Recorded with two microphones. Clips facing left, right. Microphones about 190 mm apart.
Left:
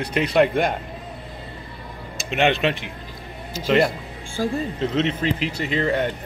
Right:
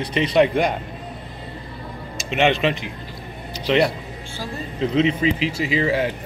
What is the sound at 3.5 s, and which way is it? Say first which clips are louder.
A man's voice: even; 45° left (ahead or behind).